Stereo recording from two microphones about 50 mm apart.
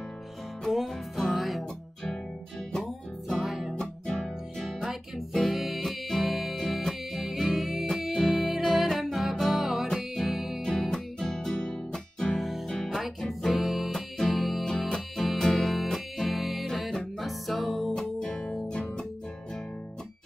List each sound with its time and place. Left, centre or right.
0.7 s music: centre
3.3 s music: centre
3.7 s music: centre
5.3 s music: centre
10.9 s music: centre
12.4 s music: centre
17.9 s music: centre